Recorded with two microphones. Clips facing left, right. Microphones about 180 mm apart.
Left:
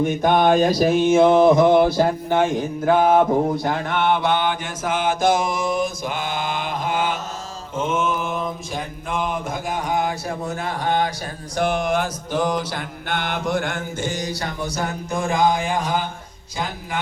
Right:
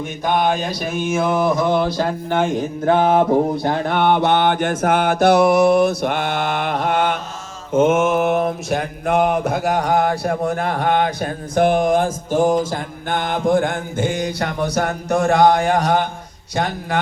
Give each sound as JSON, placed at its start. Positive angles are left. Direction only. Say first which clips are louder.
{"t": 0.2, "sound": "a sound", "louder": "left 1 dB", "side_deg": 50}
{"t": 2.8, "sound": "mantra", "louder": "right 1 dB", "side_deg": -30}
{"t": 4.1, "sound": "mantra", "louder": "right 5 dB", "side_deg": -55}
{"t": 7.8, "sound": "mantra", "louder": "right 8 dB", "side_deg": -75}
{"t": 16.6, "sound": "speech", "louder": "right 6 dB", "side_deg": -70}